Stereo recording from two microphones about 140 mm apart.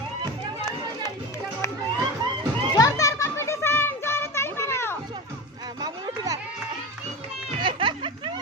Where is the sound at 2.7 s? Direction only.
25° left (ahead or behind).